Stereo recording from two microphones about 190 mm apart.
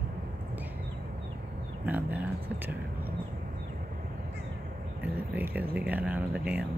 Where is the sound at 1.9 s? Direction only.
10° right (ahead or behind).